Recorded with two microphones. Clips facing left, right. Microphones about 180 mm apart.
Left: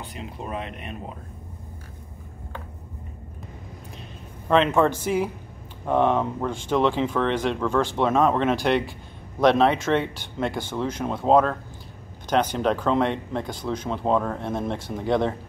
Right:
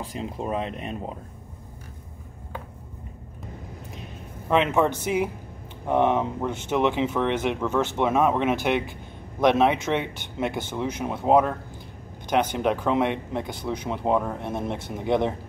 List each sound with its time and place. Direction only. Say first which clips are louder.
0.0 s speech: right 4 dB; 30° right (ahead or behind)
4.5 s speech: left 2 dB; 15° right (ahead or behind)
12.5 s speech: left 1 dB; 15° right (ahead or behind)